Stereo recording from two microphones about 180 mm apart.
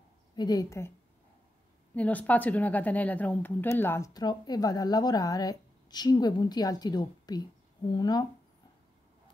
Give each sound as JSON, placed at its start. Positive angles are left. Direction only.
{"t": 0.4, "sound": "a woman's voice", "side_deg": 20}
{"t": 2.0, "sound": "a woman's voice", "side_deg": 10}